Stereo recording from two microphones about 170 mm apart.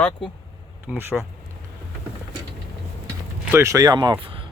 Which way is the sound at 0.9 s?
5° right (ahead or behind).